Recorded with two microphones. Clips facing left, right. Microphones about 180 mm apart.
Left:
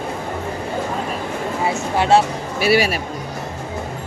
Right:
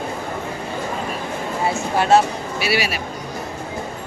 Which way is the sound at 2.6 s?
45° left (ahead or behind).